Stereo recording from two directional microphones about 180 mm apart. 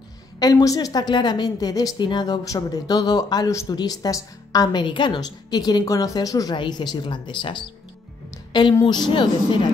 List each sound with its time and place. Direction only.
0.4 s a woman's voice: 20° left (ahead or behind)